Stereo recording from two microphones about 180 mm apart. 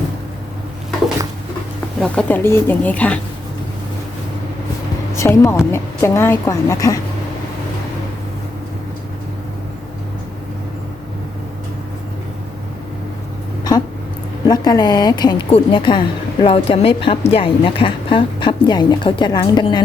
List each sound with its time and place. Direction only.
2.0 s speech: 10° left (ahead or behind)
5.1 s speech: 15° left (ahead or behind)
14.4 s a woman's voice: 20° left (ahead or behind)